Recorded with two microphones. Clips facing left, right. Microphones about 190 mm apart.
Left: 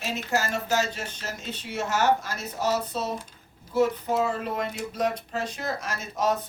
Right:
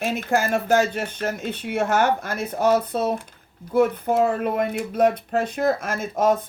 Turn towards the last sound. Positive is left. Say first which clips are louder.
# right 6 dB
turn(degrees=-50)  # may be behind; listen again after turning